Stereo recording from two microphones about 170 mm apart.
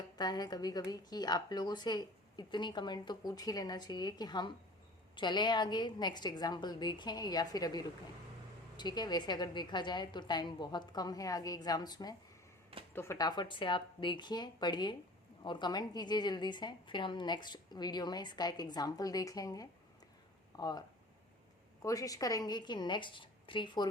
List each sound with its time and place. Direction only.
0.2 s a woman's voice: 25° left (ahead or behind)